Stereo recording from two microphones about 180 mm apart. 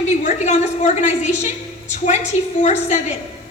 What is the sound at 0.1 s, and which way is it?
A woman's voice, 40° left (ahead or behind).